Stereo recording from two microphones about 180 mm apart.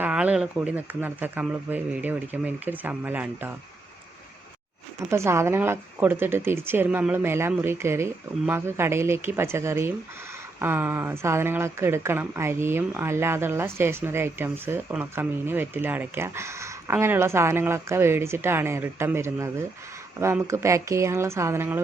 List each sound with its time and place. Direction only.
0.0 s speech: 5° right (ahead or behind)
5.1 s speech: 15° right (ahead or behind)